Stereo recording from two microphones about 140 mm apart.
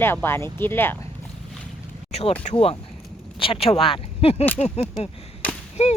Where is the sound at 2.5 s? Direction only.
60° left (ahead or behind).